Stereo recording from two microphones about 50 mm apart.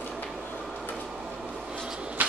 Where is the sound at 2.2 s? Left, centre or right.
Right.